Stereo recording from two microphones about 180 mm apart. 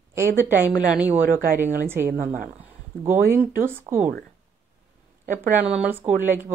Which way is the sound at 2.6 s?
10° right (ahead or behind).